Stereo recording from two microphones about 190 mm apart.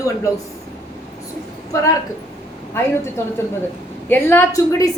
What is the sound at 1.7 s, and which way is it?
Speech, 15° left (ahead or behind).